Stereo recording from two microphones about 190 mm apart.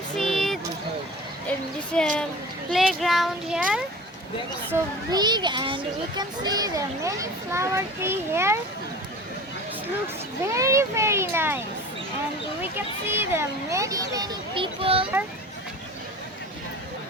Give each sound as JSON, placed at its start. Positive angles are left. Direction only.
{"t": 0.2, "sound": "a sound", "side_deg": 0}
{"t": 2.6, "sound": "speech", "side_deg": 0}
{"t": 4.7, "sound": "a child's voice", "side_deg": -20}
{"t": 10.4, "sound": "a child's voice", "side_deg": -15}
{"t": 13.1, "sound": "speech", "side_deg": -10}